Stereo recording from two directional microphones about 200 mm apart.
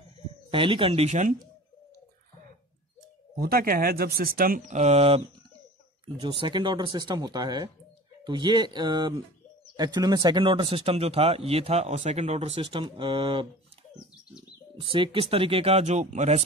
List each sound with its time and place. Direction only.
0.5 s speech: 25° right (ahead or behind)
3.3 s speech: 50° right (ahead or behind); by 5.2 s 30° right (ahead or behind)
6.4 s speech: 25° right (ahead or behind)
14.8 s speech: 25° right (ahead or behind)